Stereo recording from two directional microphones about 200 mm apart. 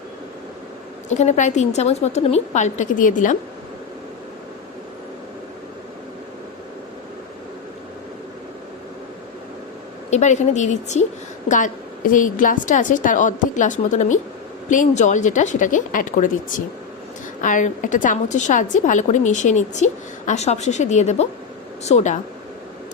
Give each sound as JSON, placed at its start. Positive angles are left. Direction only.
{"t": 1.1, "sound": "a woman's voice", "side_deg": 35}
{"t": 10.1, "sound": "a woman's voice", "side_deg": 35}